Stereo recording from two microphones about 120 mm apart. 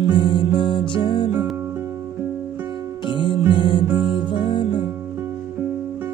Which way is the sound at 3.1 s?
45° left (ahead or behind).